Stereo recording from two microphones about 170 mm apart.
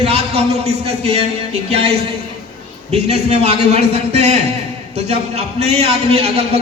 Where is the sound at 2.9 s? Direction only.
40° right (ahead or behind).